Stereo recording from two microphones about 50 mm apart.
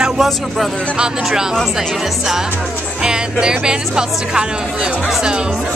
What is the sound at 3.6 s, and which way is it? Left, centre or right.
Speech, centre.